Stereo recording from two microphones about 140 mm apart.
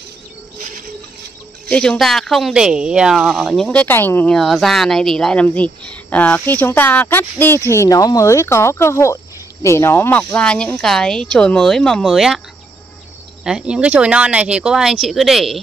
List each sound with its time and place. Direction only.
1.7 s speech: 5° left (ahead or behind)
4.4 s speech: centre (ahead or behind)
13.4 s speech: 5° right (ahead or behind)